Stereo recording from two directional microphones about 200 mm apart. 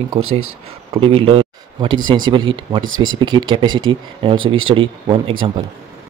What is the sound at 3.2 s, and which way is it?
Speech, 20° right (ahead or behind).